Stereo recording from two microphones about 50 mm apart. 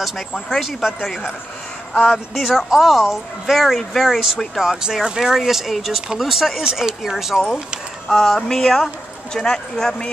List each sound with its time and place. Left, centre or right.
0.6 s a woman's voice: centre
2.3 s a woman's voice: centre
4.6 s speech: centre
8.1 s speech: centre